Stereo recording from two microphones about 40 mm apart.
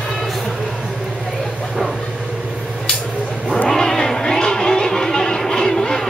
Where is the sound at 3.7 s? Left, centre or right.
Centre.